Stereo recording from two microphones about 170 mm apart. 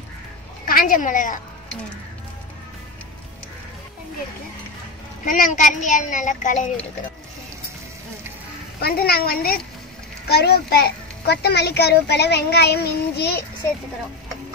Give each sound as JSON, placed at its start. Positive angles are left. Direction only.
{"t": 0.7, "sound": "a woman's voice", "side_deg": 55}
{"t": 5.2, "sound": "a child's voice", "side_deg": 50}
{"t": 8.8, "sound": "a child's voice", "side_deg": 65}